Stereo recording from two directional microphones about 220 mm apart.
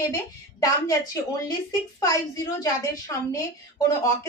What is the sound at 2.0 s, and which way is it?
A woman's voice, 15° left (ahead or behind).